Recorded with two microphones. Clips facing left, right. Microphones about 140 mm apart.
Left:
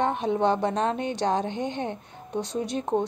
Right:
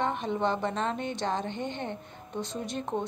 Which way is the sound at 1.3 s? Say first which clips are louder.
Left 5 dB; 70° left (ahead or behind).